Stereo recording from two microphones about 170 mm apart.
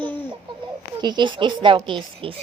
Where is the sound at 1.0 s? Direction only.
25° right (ahead or behind).